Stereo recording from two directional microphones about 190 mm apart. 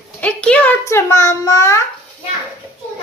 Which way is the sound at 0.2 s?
5° left (ahead or behind).